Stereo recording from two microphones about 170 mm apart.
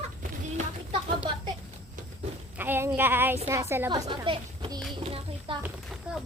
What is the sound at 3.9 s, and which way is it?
Speech, 30° right (ahead or behind).